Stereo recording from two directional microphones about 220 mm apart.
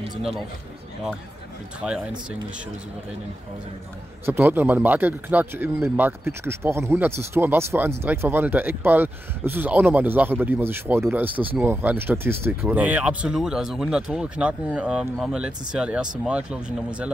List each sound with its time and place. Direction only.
0.0 s a sound: 25° right (ahead or behind)
1.8 s speech: 5° right (ahead or behind)
4.3 s speech: 10° right (ahead or behind)